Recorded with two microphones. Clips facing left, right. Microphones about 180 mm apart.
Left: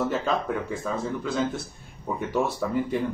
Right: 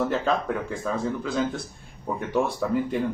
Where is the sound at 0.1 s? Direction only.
Centre (ahead or behind).